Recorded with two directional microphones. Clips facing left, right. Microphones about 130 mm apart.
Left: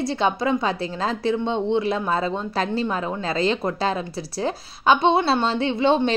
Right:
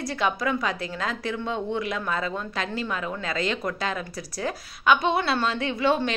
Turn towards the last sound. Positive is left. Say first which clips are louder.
# left 4 dB
turn(degrees=25)  # may be behind; listen again after turning